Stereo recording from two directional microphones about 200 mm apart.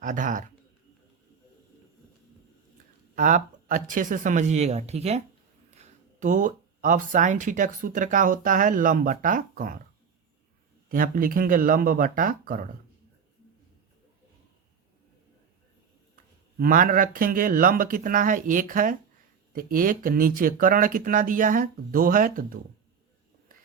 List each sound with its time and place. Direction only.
0.0 s speech: 40° right (ahead or behind)
3.2 s speech: 40° right (ahead or behind)
10.8 s speech: 45° right (ahead or behind)
16.6 s speech: 45° right (ahead or behind)